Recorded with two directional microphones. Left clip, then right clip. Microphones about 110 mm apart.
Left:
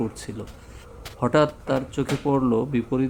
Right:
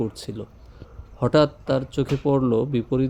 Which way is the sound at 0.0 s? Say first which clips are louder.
Right 1 dB; 30° right (ahead or behind).